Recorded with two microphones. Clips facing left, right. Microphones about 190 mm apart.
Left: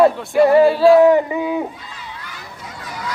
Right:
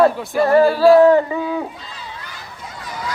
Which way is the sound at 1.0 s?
15° left (ahead or behind).